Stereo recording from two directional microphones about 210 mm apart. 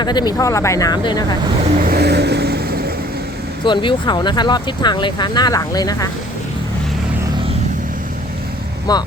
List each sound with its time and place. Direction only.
0.0 s speech: 20° left (ahead or behind)
1.8 s vehicle: 50° right (ahead or behind)
3.6 s speech: 25° left (ahead or behind)
8.9 s speech: 20° left (ahead or behind)